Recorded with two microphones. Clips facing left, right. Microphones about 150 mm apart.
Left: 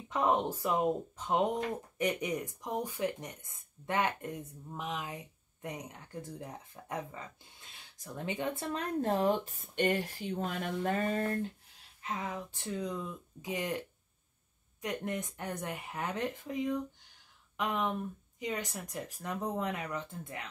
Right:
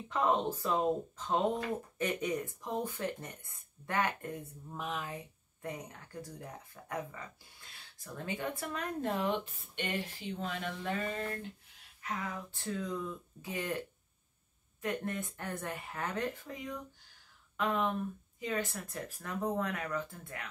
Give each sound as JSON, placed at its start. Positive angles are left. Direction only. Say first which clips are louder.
{"t": 0.1, "sound": "speech", "louder": "left 1 dB", "side_deg": 20}
{"t": 12.0, "sound": "speech", "louder": "left 2 dB", "side_deg": 20}